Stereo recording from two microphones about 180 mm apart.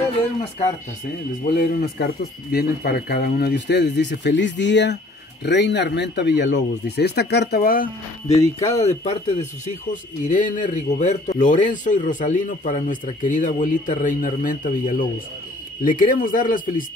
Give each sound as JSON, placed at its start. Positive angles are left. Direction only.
{"t": 1.5, "sound": "speech", "side_deg": 55}
{"t": 8.3, "sound": "a man's voice", "side_deg": 35}